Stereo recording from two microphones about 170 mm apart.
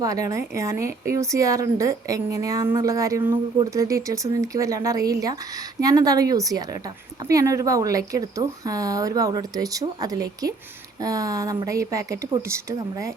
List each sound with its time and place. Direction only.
0.0 s a woman's voice: 20° right (ahead or behind)